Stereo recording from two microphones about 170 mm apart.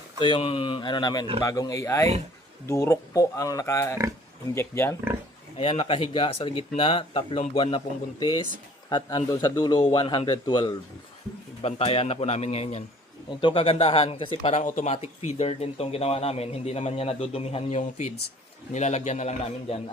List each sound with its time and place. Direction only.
0.2 s speech: 30° left (ahead or behind); by 4.9 s 15° left (ahead or behind)
5.5 s speech: 35° left (ahead or behind)
8.9 s speech: 30° left (ahead or behind)